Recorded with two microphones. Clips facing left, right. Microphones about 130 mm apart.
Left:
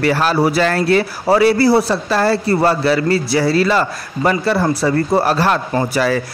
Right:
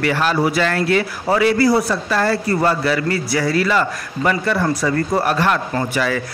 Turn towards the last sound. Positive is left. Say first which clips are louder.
# left 4 dB
turn(degrees=35)  # may be behind; listen again after turning